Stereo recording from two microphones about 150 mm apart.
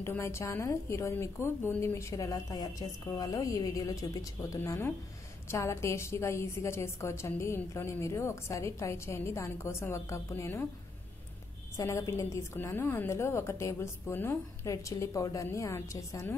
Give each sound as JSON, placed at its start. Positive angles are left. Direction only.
{"t": 0.0, "sound": "a woman's voice", "side_deg": 15}
{"t": 11.7, "sound": "a woman's voice", "side_deg": 20}